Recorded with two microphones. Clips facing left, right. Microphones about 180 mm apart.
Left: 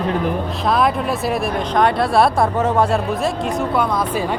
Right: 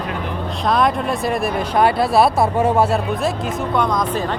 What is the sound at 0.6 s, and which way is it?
Speech, centre (ahead or behind).